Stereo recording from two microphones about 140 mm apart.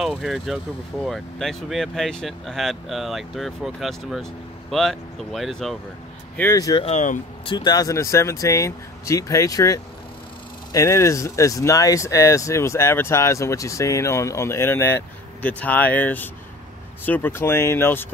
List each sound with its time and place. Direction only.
0.0 s speech: centre (ahead or behind)
6.5 s speech: 25° left (ahead or behind)
6.8 s speech: 55° left (ahead or behind)
7.4 s speech: 30° left (ahead or behind)